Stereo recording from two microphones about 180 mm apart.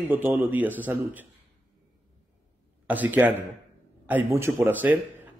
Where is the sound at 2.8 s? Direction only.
10° right (ahead or behind).